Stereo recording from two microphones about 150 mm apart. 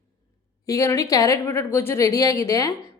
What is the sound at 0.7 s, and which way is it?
A woman's voice, 20° left (ahead or behind).